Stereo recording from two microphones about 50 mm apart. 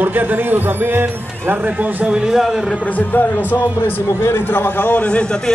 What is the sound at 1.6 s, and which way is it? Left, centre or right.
Speech, right.